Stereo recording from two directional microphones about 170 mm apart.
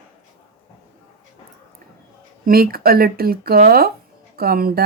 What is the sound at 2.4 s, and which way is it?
Speech, 60° right (ahead or behind).